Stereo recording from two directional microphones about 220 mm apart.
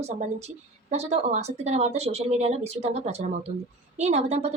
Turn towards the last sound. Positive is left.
turn(degrees=-30)  # may be behind; listen again after turning